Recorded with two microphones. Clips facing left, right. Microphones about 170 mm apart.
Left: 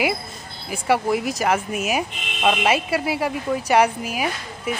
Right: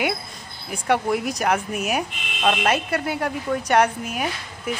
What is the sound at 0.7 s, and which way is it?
Speech, 5° left (ahead or behind).